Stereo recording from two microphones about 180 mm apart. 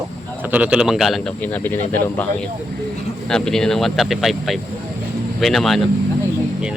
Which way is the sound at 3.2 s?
5° left (ahead or behind).